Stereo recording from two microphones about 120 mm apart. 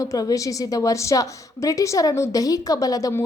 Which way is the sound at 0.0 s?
30° left (ahead or behind).